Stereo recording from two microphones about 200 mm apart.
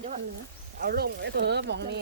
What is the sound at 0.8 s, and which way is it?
Speech, 50° right (ahead or behind).